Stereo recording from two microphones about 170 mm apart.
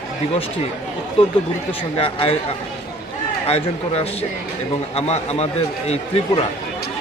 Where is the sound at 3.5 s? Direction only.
35° left (ahead or behind).